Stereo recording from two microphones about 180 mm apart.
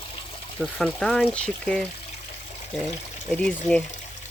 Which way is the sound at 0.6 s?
Centre (ahead or behind).